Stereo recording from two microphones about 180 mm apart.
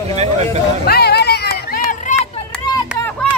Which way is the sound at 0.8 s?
60° left (ahead or behind).